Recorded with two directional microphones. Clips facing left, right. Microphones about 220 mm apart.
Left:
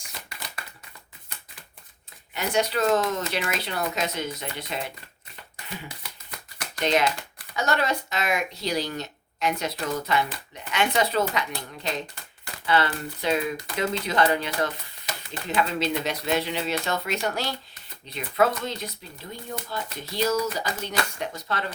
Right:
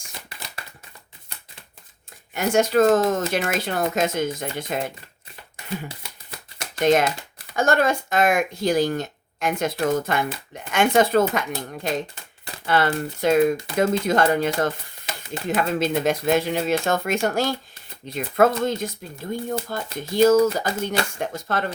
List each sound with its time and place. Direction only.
2.3 s speech: 50° right (ahead or behind)
6.8 s speech: 50° right (ahead or behind)